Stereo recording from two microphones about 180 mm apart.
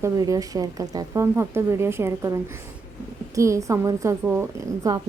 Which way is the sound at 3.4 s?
15° right (ahead or behind).